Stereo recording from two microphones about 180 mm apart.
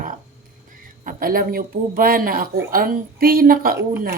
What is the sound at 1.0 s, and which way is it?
A man's voice, 50° right (ahead or behind).